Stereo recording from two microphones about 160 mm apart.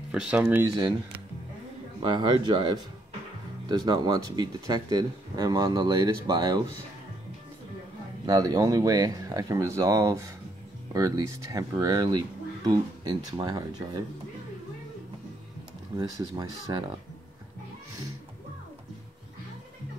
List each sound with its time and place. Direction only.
0.1 s speech: 5° right (ahead or behind)
2.0 s speech: 30° right (ahead or behind)
8.3 s speech: 25° right (ahead or behind)
16.0 s speech: 30° right (ahead or behind)